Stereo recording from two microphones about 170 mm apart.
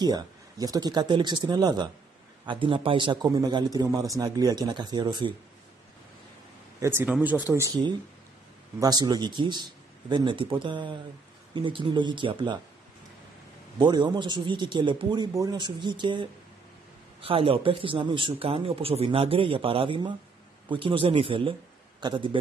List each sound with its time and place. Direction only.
0.0 s a man's voice: 25° right (ahead or behind)
6.8 s a man's voice: 15° right (ahead or behind)
13.7 s a man's voice: 25° right (ahead or behind)